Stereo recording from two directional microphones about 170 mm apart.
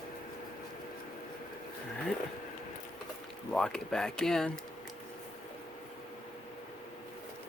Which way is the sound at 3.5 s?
5° left (ahead or behind).